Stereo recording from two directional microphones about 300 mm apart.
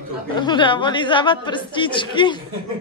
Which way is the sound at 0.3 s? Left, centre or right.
Centre.